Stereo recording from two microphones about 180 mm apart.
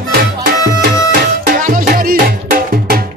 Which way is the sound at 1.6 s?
55° right (ahead or behind).